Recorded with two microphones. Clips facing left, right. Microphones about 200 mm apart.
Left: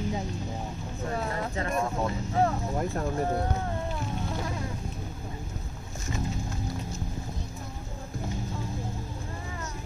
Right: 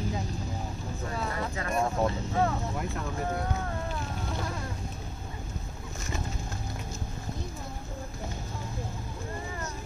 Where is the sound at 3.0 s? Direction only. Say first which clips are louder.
Left 4 dB; 35° left (ahead or behind).